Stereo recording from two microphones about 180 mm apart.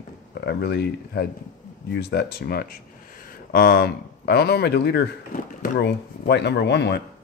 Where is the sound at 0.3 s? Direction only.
65° left (ahead or behind).